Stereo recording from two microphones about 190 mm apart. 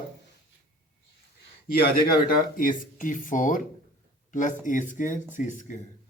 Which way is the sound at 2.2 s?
45° left (ahead or behind).